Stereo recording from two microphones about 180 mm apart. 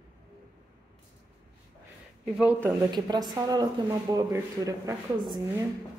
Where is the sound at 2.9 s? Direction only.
25° right (ahead or behind).